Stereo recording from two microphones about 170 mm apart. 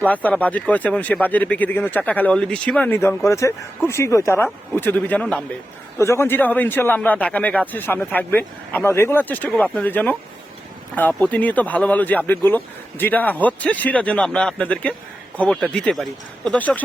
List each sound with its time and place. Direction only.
0.0 s speech: 10° left (ahead or behind)